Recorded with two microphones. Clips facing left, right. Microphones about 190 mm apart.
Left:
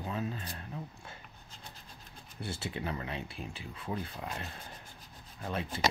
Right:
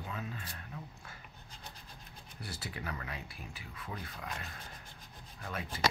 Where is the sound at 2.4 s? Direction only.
25° left (ahead or behind).